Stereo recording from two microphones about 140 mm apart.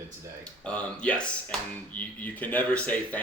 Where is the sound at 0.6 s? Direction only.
10° left (ahead or behind).